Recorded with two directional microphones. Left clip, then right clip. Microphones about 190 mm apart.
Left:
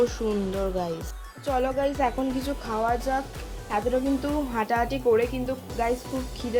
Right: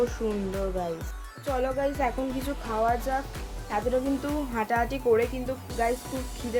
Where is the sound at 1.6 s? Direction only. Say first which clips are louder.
Left 1 dB; 25° left (ahead or behind).